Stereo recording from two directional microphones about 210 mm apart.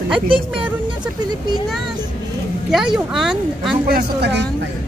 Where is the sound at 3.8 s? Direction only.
50° right (ahead or behind).